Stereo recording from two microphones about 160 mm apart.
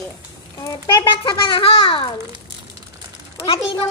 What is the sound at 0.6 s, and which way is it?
A child's voice, 20° left (ahead or behind).